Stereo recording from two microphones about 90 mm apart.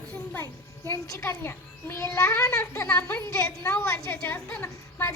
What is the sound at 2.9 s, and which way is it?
A woman's voice, 25° left (ahead or behind).